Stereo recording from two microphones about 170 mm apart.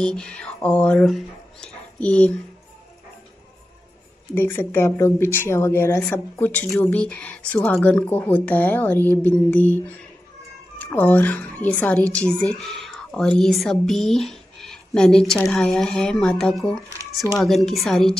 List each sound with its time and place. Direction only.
0.0 s speech: 5° left (ahead or behind)
4.4 s speech: 15° left (ahead or behind)
10.8 s a woman's voice: 10° left (ahead or behind)